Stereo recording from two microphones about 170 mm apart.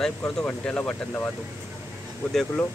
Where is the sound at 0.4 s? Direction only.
5° left (ahead or behind).